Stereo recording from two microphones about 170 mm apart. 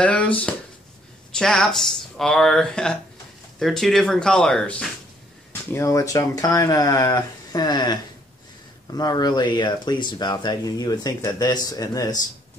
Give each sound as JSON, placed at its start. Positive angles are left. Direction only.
{"t": 0.0, "sound": "speech", "side_deg": 10}
{"t": 5.5, "sound": "speech", "side_deg": 15}